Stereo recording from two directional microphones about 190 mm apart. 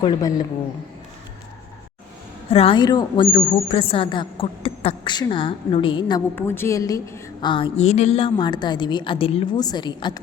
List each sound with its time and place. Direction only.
0.0 s speech: 20° left (ahead or behind)
2.5 s speech: 30° left (ahead or behind)
6.3 s speech: 10° left (ahead or behind)